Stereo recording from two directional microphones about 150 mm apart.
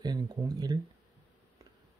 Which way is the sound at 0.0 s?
25° right (ahead or behind).